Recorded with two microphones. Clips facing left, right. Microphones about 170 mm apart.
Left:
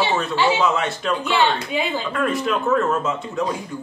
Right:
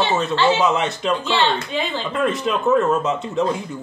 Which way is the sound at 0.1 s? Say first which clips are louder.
Right 2 dB; 20° right (ahead or behind).